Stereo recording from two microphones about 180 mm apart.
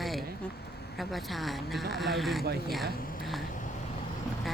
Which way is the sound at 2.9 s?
55° left (ahead or behind).